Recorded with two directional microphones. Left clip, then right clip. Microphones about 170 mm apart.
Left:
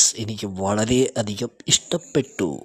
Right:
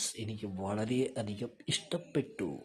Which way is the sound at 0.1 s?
40° left (ahead or behind).